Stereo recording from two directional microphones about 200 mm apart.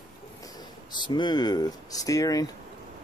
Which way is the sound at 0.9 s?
25° left (ahead or behind).